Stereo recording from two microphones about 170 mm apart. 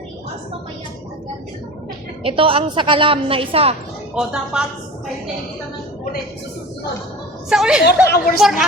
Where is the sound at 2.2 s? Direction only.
30° right (ahead or behind).